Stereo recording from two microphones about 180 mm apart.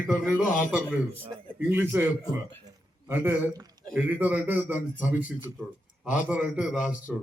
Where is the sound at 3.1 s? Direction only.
15° right (ahead or behind).